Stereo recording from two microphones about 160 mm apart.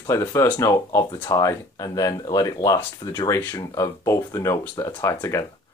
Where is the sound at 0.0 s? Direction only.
20° left (ahead or behind).